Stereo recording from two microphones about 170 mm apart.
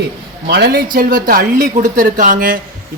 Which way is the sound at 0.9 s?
55° right (ahead or behind).